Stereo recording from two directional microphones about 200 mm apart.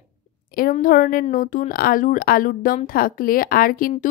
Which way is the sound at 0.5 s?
45° left (ahead or behind).